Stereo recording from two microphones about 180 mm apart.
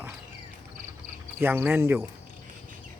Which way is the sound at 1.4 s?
10° right (ahead or behind).